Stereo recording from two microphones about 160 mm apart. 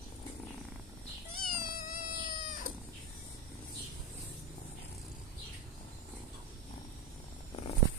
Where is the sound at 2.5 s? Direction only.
60° left (ahead or behind).